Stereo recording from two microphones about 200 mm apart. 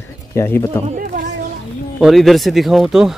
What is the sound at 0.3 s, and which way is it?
Speech, 15° left (ahead or behind).